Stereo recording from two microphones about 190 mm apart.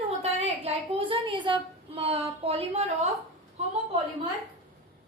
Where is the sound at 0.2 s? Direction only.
35° right (ahead or behind).